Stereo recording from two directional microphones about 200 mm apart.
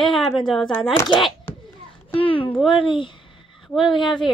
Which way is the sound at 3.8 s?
25° left (ahead or behind).